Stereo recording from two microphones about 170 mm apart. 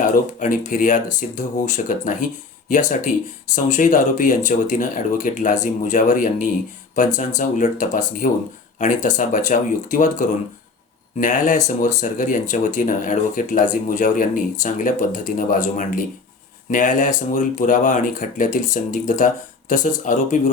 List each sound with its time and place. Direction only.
0.0 s speech: 50° left (ahead or behind)